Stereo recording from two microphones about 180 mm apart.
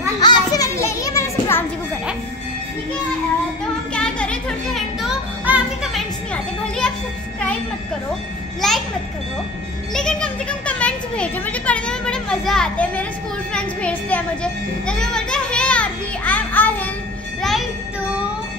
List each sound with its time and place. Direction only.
0.2 s children playing: 20° left (ahead or behind)
3.9 s a sound: 5° left (ahead or behind)
5.4 s music: 10° right (ahead or behind)
8.5 s a child's voice: centre (ahead or behind)
9.9 s a child's voice: 5° left (ahead or behind)
17.4 s music: centre (ahead or behind)